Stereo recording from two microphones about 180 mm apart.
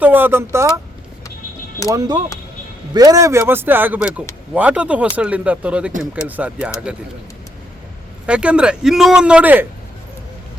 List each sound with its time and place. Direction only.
0.0 s speech: 10° right (ahead or behind)
1.9 s a man's voice: 20° right (ahead or behind); by 7.0 s 5° right (ahead or behind)
8.3 s a man's voice: 5° right (ahead or behind)